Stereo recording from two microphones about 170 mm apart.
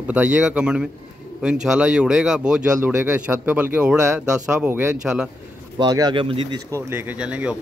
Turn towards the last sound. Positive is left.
turn(degrees=-5)  # may be behind; listen again after turning